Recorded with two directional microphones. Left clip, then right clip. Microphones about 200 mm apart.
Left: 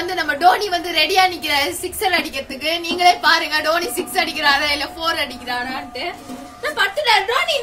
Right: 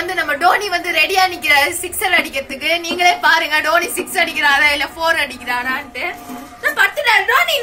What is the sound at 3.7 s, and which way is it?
A woman's voice, 20° left (ahead or behind).